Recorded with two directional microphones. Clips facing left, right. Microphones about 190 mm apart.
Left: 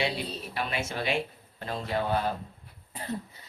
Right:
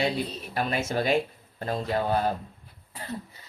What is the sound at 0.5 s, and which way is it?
Speech, 40° right (ahead or behind).